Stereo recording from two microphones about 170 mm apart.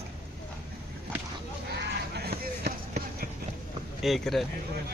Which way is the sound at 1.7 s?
70° right (ahead or behind).